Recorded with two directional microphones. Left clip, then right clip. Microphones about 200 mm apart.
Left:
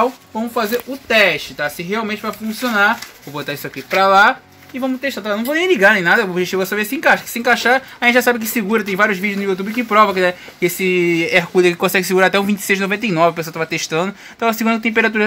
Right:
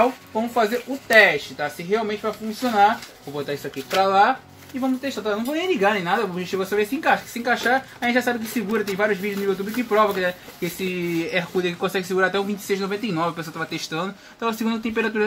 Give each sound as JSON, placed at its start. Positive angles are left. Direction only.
{"t": 0.6, "sound": "speech", "side_deg": 45}
{"t": 4.0, "sound": "speech", "side_deg": 50}